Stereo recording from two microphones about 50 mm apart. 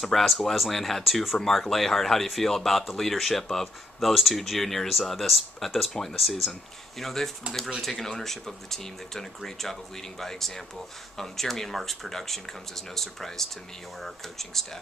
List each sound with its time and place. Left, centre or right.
0.0 s speech: centre
7.5 s speech: right
7.8 s speech: centre